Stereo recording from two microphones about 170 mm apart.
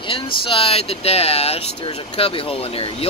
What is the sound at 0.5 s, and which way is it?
Speech, 35° left (ahead or behind).